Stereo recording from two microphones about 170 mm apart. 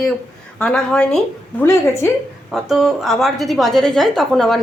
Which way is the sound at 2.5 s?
Centre (ahead or behind).